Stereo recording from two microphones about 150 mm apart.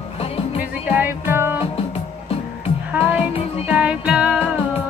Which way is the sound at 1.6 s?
40° left (ahead or behind).